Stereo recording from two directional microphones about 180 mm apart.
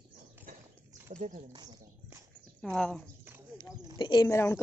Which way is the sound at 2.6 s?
5° left (ahead or behind).